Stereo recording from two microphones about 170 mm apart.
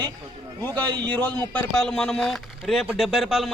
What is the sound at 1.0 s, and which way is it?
Speech, 10° left (ahead or behind).